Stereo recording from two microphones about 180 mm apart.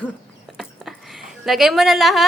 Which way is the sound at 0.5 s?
Centre (ahead or behind).